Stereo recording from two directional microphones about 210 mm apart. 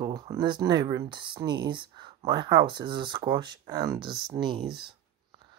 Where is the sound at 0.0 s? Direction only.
20° right (ahead or behind).